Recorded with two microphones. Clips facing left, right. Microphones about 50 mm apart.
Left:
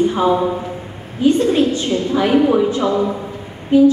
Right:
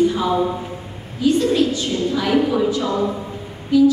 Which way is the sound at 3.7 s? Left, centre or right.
Left.